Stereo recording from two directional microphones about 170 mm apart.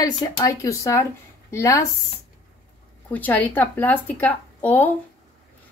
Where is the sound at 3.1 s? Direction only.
10° left (ahead or behind).